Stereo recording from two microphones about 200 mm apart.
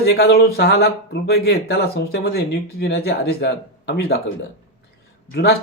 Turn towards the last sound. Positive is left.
turn(degrees=55)  # may be behind; listen again after turning